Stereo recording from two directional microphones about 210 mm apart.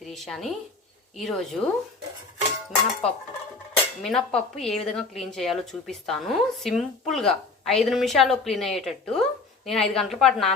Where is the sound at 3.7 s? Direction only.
Centre (ahead or behind).